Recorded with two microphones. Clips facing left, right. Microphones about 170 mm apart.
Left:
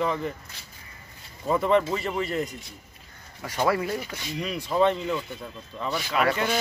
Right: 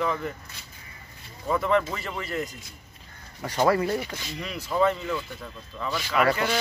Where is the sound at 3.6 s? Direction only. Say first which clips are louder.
Right 2 dB; 5° left (ahead or behind).